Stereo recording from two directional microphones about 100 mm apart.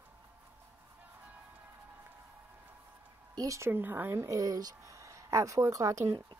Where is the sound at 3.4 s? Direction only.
30° right (ahead or behind).